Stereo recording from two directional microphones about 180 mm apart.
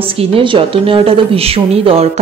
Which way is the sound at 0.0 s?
30° right (ahead or behind).